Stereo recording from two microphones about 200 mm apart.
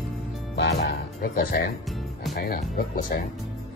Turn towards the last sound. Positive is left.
turn(degrees=45)  # may be behind; listen again after turning